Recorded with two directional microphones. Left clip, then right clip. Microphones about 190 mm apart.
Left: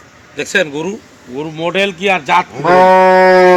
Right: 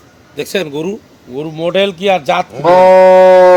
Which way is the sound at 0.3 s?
65° right (ahead or behind).